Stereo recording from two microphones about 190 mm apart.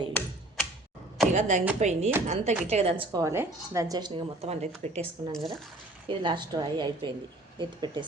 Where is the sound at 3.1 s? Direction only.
15° right (ahead or behind).